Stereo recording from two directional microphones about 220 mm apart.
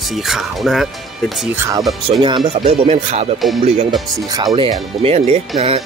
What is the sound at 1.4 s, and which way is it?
Speech, 10° right (ahead or behind).